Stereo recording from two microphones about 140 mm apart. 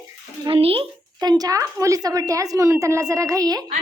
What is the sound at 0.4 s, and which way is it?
Speech, 40° right (ahead or behind).